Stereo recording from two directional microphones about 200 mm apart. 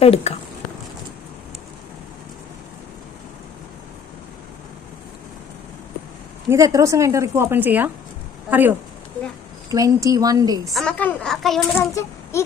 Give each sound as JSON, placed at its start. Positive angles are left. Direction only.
{"t": 0.0, "sound": "speech", "side_deg": 30}
{"t": 6.5, "sound": "a woman's voice", "side_deg": -15}
{"t": 10.7, "sound": "a woman's voice", "side_deg": 5}
{"t": 11.8, "sound": "a child's voice", "side_deg": 15}